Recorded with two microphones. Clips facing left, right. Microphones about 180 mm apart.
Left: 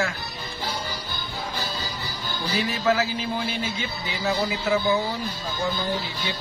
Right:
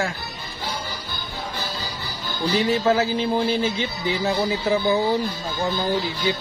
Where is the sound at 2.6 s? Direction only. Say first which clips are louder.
Right 3 dB; 30° right (ahead or behind).